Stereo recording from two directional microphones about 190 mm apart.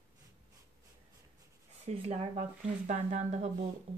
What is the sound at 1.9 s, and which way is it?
Speech, 35° right (ahead or behind).